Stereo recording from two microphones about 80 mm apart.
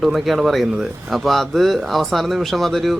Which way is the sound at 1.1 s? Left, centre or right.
Centre.